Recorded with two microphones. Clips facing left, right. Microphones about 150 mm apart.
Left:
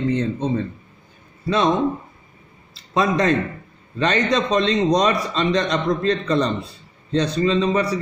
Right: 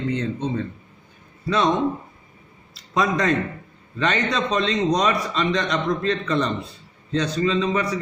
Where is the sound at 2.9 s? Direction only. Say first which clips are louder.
Left 2 dB; 30° left (ahead or behind).